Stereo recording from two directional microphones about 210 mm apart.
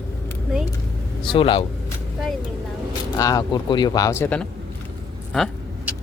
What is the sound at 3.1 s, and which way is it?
Speech, 15° left (ahead or behind).